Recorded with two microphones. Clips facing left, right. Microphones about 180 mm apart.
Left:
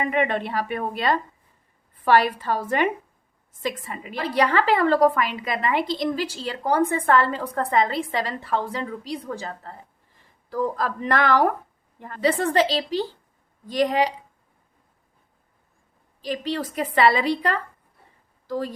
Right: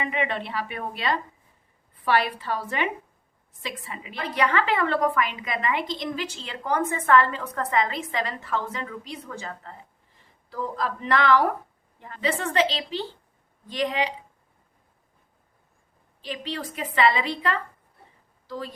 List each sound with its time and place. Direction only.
0.0 s a woman's voice: 45° left (ahead or behind)
4.2 s a woman's voice: 35° left (ahead or behind)
10.5 s a woman's voice: 45° left (ahead or behind)
16.2 s a woman's voice: 40° left (ahead or behind)